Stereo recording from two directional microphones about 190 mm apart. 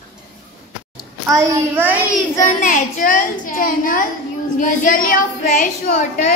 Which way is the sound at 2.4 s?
45° left (ahead or behind).